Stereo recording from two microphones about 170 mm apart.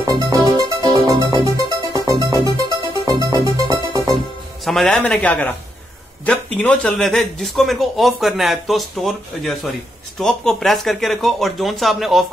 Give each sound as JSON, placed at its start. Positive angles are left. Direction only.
{"t": 0.0, "sound": "music", "side_deg": -25}
{"t": 4.6, "sound": "a man's voice", "side_deg": 0}